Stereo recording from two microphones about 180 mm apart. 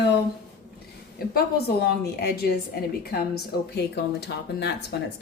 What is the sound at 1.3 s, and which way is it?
A woman's voice, 60° left (ahead or behind).